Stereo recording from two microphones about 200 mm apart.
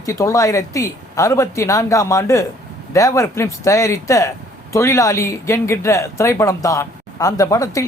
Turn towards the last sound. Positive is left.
turn(degrees=15)  # may be behind; listen again after turning